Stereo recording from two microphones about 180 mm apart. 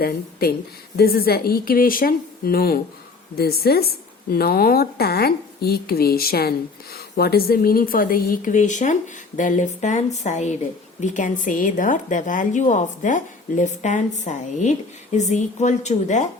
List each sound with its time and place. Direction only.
0.0 s a woman's voice: 55° left (ahead or behind); by 16.3 s 40° left (ahead or behind)